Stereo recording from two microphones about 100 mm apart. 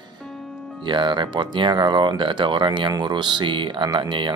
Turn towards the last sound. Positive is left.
turn(degrees=-55)  # may be behind; listen again after turning